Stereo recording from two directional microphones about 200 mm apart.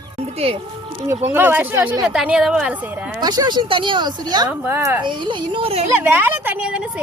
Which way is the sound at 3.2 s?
20° right (ahead or behind).